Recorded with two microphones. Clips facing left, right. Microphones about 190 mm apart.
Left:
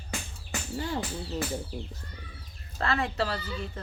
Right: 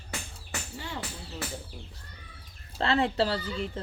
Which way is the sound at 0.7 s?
40° left (ahead or behind).